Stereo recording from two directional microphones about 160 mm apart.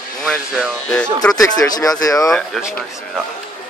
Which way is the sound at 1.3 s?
20° left (ahead or behind).